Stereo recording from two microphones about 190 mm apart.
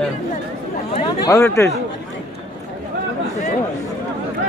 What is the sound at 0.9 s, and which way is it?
Speech, 20° left (ahead or behind).